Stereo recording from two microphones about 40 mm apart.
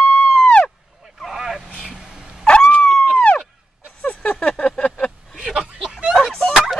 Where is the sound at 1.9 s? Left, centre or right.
Right.